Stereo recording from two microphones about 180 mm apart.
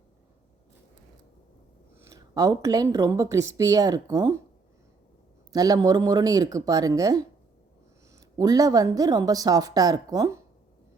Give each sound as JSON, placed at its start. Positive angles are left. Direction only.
{"t": 2.0, "sound": "speech", "side_deg": -20}
{"t": 5.5, "sound": "speech", "side_deg": -20}